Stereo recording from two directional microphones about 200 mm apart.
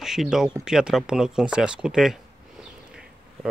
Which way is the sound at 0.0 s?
Centre (ahead or behind).